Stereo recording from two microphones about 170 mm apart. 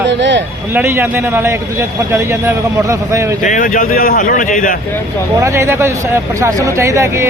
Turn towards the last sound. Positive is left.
turn(degrees=-15)  # may be behind; listen again after turning